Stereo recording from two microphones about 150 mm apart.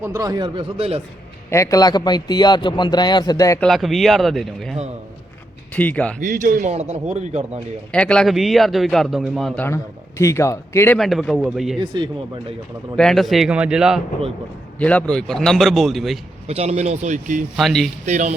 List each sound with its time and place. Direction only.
0.0 s speech: 20° right (ahead or behind); by 1.0 s 40° right (ahead or behind)
1.5 s a man's voice: 20° left (ahead or behind)
3.6 s a man's voice: centre (ahead or behind)
6.1 s a man's voice: 60° right (ahead or behind)
7.9 s a man's voice: 5° left (ahead or behind)
9.6 s speech: 15° left (ahead or behind)
10.9 s a man's voice: centre (ahead or behind)
13.0 s a man's voice: centre (ahead or behind)
14.8 s a man's voice: 10° left (ahead or behind)
16.5 s a man's voice: 45° right (ahead or behind)
17.6 s a man's voice: centre (ahead or behind)
18.0 s a man's voice: 50° right (ahead or behind)